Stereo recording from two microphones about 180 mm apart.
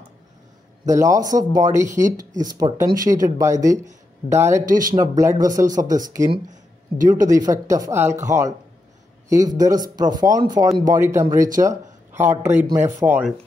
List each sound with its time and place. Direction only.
0.8 s speech: 20° right (ahead or behind)
4.6 s speech: 50° right (ahead or behind)
4.9 s speech: 20° right (ahead or behind)
7.2 s speech: 20° right (ahead or behind)